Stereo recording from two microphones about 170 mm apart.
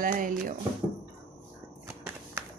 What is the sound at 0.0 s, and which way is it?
Speech, 55° right (ahead or behind).